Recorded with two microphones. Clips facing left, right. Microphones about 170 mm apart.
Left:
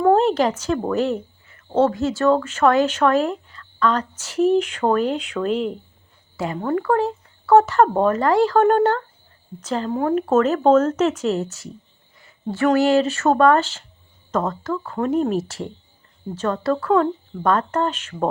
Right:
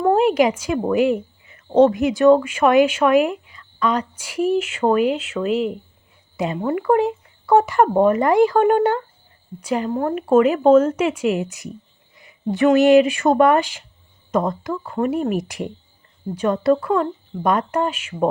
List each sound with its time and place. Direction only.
0.0 s a woman's voice: 10° right (ahead or behind)
6.3 s speech: 15° right (ahead or behind)
9.9 s speech: centre (ahead or behind)